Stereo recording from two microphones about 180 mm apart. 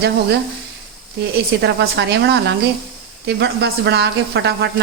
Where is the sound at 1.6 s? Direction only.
70° right (ahead or behind).